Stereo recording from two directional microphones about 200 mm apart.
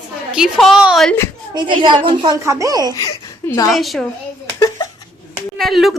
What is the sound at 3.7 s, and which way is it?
Speech, centre (ahead or behind).